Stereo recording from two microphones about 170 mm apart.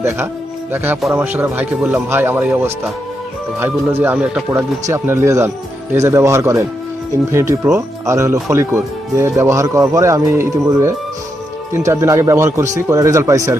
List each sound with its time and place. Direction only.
1.1 s speech: 10° right (ahead or behind)